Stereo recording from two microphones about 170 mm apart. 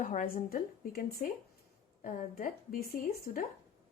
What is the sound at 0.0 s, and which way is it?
A woman's voice, 50° left (ahead or behind).